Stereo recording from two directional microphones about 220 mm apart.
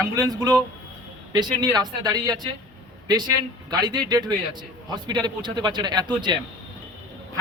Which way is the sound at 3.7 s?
20° right (ahead or behind).